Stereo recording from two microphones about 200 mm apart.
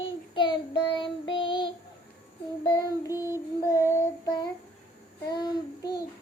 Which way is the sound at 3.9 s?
20° left (ahead or behind).